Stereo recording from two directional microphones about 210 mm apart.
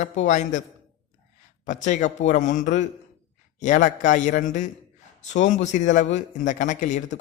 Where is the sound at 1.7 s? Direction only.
35° left (ahead or behind).